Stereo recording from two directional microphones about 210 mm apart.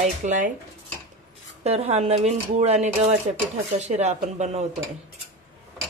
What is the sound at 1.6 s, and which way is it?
Speech, 30° right (ahead or behind).